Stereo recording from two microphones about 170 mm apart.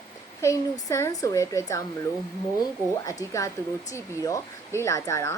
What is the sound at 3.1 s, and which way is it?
A woman's voice, 20° left (ahead or behind).